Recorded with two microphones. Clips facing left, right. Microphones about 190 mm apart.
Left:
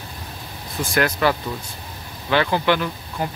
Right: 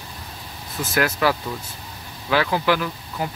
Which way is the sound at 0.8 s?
5° right (ahead or behind).